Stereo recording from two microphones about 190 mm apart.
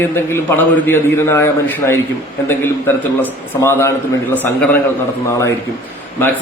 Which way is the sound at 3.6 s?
15° left (ahead or behind).